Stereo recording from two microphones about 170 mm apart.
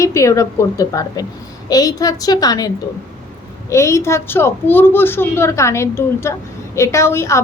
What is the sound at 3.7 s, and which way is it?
A woman's voice, 15° left (ahead or behind).